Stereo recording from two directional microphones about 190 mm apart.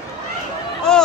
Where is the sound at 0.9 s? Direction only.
5° left (ahead or behind).